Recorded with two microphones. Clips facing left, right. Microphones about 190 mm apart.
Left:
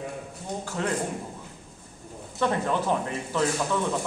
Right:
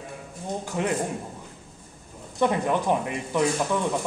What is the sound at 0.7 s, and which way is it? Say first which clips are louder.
Speech: right 3 dB; 15° right (ahead or behind).